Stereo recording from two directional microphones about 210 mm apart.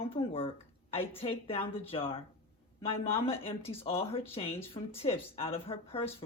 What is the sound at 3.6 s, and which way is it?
Speech, 25° left (ahead or behind).